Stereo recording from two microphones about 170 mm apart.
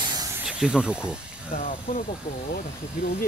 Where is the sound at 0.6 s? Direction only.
5° right (ahead or behind).